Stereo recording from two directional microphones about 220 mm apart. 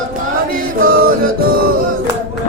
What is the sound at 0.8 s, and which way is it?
Music, 40° right (ahead or behind).